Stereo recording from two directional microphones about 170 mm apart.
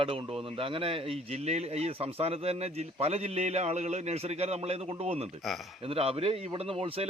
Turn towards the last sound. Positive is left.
turn(degrees=-35)  # may be behind; listen again after turning